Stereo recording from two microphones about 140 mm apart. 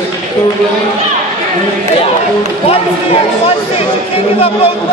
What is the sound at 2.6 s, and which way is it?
Speech, 45° left (ahead or behind).